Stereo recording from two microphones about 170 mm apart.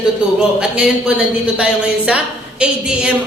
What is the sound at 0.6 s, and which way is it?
A woman's voice, 5° right (ahead or behind).